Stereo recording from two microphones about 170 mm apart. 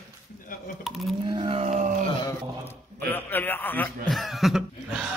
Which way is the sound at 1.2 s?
30° right (ahead or behind).